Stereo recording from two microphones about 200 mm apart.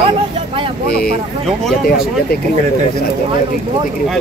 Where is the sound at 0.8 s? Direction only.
50° left (ahead or behind).